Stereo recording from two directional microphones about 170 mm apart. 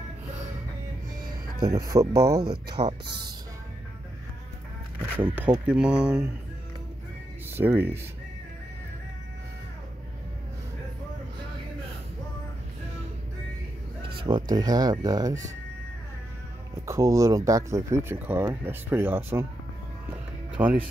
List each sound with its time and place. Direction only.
1.6 s speech: 20° right (ahead or behind)
2.7 s speech: 35° right (ahead or behind)
5.1 s speech: 10° right (ahead or behind)
7.5 s speech: 10° right (ahead or behind)
14.0 s speech: 30° right (ahead or behind)
16.8 s speech: 20° right (ahead or behind)
20.6 s speech: 10° right (ahead or behind)